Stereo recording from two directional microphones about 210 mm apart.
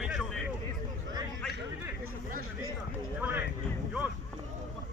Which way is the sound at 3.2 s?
10° right (ahead or behind).